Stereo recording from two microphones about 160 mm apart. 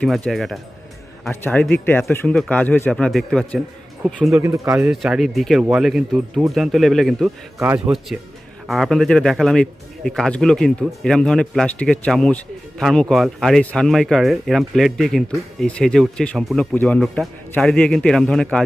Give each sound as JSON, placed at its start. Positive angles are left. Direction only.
{"t": 0.0, "sound": "a man's voice", "side_deg": 0}
{"t": 4.3, "sound": "speech", "side_deg": -15}
{"t": 4.9, "sound": "a man's voice", "side_deg": -5}
{"t": 7.6, "sound": "speech", "side_deg": -15}
{"t": 8.6, "sound": "a man's voice", "side_deg": 0}